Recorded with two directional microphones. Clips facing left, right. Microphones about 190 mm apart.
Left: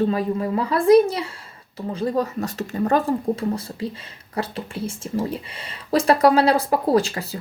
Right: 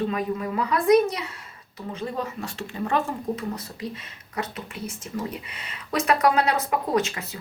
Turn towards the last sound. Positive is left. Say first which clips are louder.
# left 5 dB
turn(degrees=35)  # may be behind; listen again after turning